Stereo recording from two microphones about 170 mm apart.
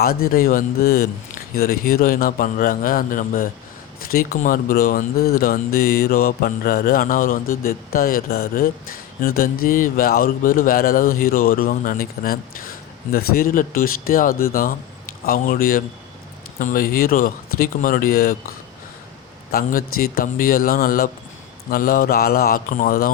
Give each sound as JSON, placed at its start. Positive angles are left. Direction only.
{"t": 0.0, "sound": "speech", "side_deg": 60}
{"t": 19.5, "sound": "speech", "side_deg": 60}